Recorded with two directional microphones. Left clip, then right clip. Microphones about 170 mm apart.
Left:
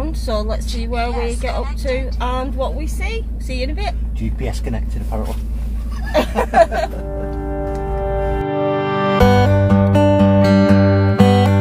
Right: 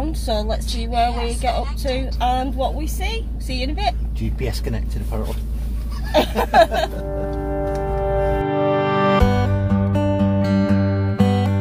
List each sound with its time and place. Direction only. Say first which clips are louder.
0.0 s a woman's voice: left 1 dB; 20° left (ahead or behind)
4.4 s speech: even; 10° right (ahead or behind)
6.1 s a woman's voice: left 1 dB; 20° left (ahead or behind)
7.1 s music: even; centre (ahead or behind)